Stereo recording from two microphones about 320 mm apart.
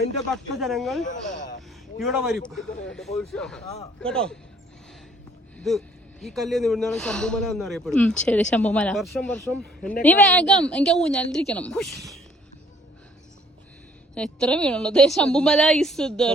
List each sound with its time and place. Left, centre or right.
0.3 s speech: centre
1.0 s speech: left
2.0 s speech: centre
5.5 s speech: centre
14.2 s speech: centre